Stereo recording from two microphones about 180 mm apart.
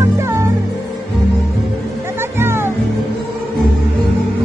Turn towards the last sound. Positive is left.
turn(degrees=-15)  # may be behind; listen again after turning